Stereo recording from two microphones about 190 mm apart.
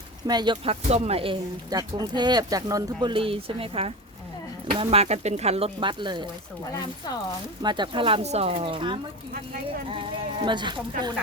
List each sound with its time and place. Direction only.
0.3 s speech: 20° right (ahead or behind)
7.6 s speech: 25° right (ahead or behind)